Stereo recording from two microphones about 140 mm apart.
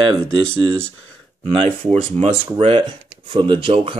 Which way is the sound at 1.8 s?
45° right (ahead or behind).